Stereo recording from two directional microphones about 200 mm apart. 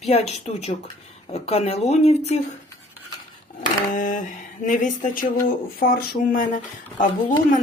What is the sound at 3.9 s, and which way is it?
Speech, 40° left (ahead or behind).